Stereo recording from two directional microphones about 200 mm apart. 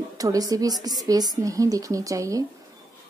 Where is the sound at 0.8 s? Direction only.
20° right (ahead or behind).